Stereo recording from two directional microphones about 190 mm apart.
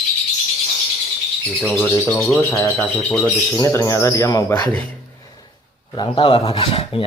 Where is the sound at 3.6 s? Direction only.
20° left (ahead or behind).